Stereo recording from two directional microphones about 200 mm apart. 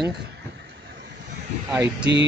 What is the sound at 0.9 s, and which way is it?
Vehicle, 55° right (ahead or behind).